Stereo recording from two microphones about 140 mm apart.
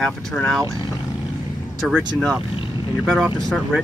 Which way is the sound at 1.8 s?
Centre (ahead or behind).